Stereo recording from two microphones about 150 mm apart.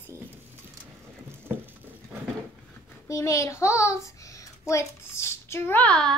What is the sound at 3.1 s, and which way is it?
A child's voice, 20° left (ahead or behind).